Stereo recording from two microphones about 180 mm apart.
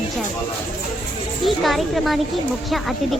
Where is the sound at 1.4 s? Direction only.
Centre (ahead or behind).